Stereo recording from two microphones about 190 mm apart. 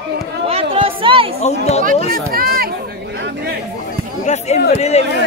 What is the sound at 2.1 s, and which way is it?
Speech, 50° right (ahead or behind).